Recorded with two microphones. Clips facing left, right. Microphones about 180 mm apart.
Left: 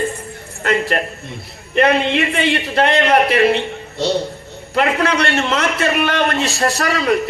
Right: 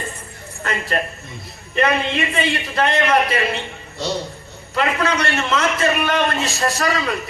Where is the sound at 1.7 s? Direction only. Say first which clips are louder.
Left 5 dB; 65° left (ahead or behind).